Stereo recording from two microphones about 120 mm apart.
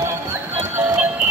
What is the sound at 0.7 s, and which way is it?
Music, 15° right (ahead or behind).